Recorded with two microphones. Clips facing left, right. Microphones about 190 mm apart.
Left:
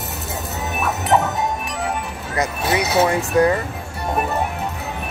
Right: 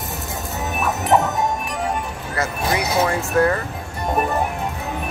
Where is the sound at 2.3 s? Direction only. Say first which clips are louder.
Left 2 dB; 25° left (ahead or behind).